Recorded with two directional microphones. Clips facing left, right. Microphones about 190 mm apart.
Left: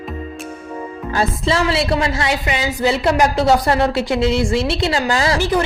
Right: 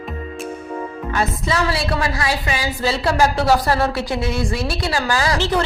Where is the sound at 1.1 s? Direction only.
30° left (ahead or behind).